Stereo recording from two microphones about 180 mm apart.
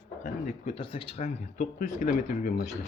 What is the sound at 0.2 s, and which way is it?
Speech, 40° left (ahead or behind).